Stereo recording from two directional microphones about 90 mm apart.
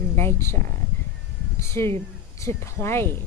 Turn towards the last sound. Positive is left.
turn(degrees=30)  # may be behind; listen again after turning